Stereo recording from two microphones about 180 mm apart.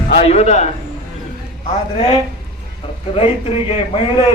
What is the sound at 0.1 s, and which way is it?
Speech, 35° left (ahead or behind).